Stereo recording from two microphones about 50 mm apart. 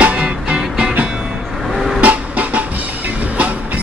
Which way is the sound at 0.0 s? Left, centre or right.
Right.